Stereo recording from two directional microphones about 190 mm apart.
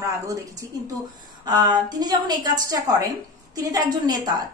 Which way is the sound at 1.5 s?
20° right (ahead or behind).